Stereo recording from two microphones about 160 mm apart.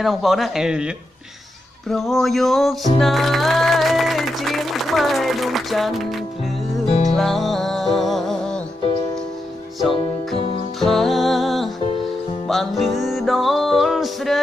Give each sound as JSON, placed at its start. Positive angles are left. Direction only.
{"t": 0.0, "sound": "speech", "side_deg": 0}
{"t": 1.9, "sound": "music", "side_deg": 0}
{"t": 9.9, "sound": "music", "side_deg": 35}
{"t": 10.8, "sound": "music", "side_deg": 0}